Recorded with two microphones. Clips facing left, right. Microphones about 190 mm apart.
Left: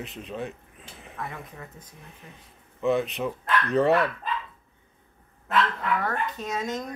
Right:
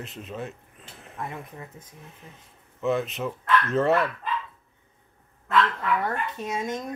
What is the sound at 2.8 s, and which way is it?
Speech, centre (ahead or behind).